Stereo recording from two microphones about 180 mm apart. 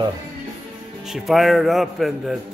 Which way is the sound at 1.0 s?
Centre (ahead or behind).